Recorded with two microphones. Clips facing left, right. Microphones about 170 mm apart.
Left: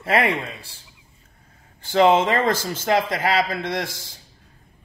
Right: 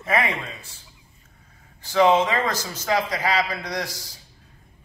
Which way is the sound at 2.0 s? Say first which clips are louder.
Left 2 dB; 50° left (ahead or behind).